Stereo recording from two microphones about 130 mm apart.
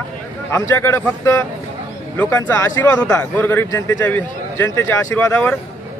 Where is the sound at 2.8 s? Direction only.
30° left (ahead or behind).